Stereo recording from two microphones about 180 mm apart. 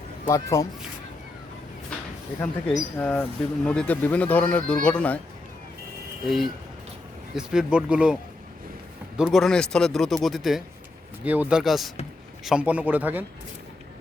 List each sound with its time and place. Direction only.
0.3 s speech: 20° left (ahead or behind)
2.7 s speech: 5° left (ahead or behind)
6.2 s a man's voice: centre (ahead or behind)